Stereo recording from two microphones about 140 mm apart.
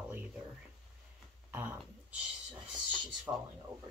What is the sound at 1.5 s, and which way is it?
Speech, 15° right (ahead or behind).